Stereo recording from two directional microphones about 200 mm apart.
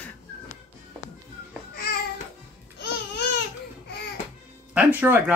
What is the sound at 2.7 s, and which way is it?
Babbling, 60° left (ahead or behind).